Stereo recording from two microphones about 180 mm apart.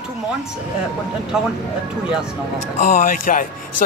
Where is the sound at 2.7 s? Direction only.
50° left (ahead or behind).